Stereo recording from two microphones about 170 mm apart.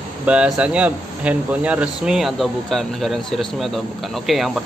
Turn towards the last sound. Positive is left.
turn(degrees=0)  # may be behind; listen again after turning